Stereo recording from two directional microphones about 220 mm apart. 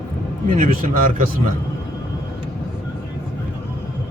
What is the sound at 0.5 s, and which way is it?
Speech, 40° right (ahead or behind).